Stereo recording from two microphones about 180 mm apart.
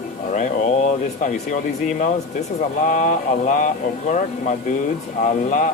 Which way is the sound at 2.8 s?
45° left (ahead or behind).